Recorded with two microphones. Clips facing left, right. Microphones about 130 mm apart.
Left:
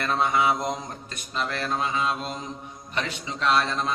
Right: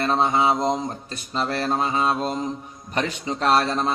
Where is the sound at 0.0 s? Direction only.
30° right (ahead or behind).